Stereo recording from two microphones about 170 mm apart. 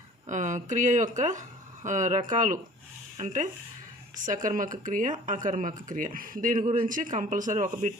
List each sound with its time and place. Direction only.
0.3 s speech: 45° right (ahead or behind)